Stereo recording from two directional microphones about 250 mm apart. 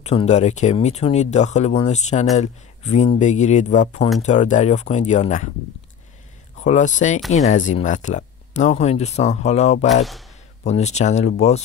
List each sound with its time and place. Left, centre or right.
0.0 s speech: left
6.6 s speech: left